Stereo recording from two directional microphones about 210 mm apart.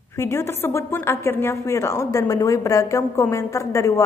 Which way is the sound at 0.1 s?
10° left (ahead or behind).